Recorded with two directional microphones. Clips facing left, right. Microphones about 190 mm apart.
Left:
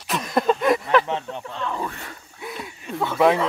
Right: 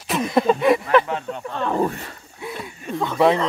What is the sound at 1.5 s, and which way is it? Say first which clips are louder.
Speech: right 8 dB; 50° right (ahead or behind).